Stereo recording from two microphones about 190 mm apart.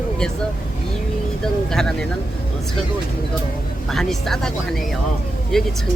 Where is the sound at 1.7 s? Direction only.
5° left (ahead or behind).